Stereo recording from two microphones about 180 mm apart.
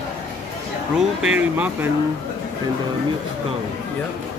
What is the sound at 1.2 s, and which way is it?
Speech, 10° right (ahead or behind).